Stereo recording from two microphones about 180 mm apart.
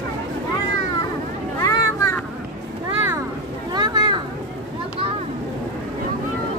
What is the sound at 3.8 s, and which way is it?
Children playing, 25° right (ahead or behind).